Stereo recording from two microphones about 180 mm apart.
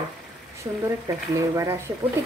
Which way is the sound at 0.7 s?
20° right (ahead or behind).